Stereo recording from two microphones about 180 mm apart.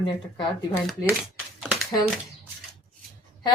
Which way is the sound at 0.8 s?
Centre (ahead or behind).